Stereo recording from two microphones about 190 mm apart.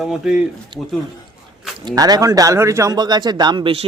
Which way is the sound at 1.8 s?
20° right (ahead or behind).